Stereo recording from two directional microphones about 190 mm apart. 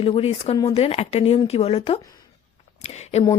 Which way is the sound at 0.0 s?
30° left (ahead or behind).